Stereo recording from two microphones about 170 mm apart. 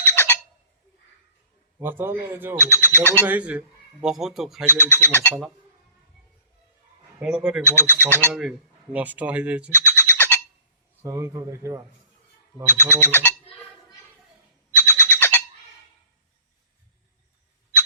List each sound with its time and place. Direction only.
0.0 s a sound: 15° left (ahead or behind)
1.8 s speech: 10° right (ahead or behind)
2.6 s speech: 15° left (ahead or behind)
3.2 s speech: 10° right (ahead or behind)
4.7 s speech: 15° left (ahead or behind)
7.2 s speech: 5° right (ahead or behind)
7.6 s speech: 15° left (ahead or behind)
8.3 s speech: 5° right (ahead or behind)
9.6 s bird: 15° left (ahead or behind)
11.0 s speech: 20° right (ahead or behind)
12.7 s a sound: 15° left (ahead or behind)
14.8 s a sound: 10° left (ahead or behind)